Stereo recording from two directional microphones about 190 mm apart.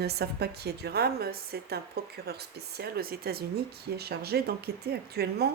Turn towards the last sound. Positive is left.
turn(degrees=-55)  # may be behind; listen again after turning